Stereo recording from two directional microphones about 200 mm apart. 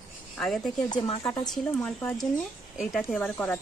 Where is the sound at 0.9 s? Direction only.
20° left (ahead or behind).